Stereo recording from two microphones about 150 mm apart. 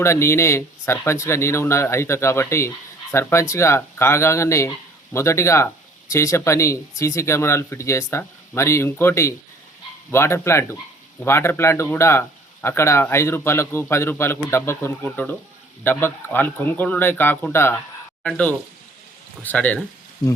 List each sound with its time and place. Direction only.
0.0 s speech: 15° left (ahead or behind)